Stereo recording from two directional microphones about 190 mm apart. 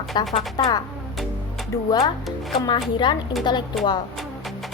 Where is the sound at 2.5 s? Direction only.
25° left (ahead or behind).